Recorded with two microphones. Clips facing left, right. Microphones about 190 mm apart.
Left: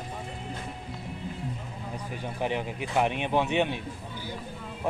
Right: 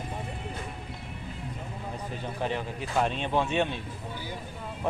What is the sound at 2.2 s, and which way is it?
Speech, 15° left (ahead or behind).